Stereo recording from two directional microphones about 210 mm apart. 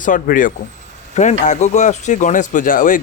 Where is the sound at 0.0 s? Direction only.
40° left (ahead or behind).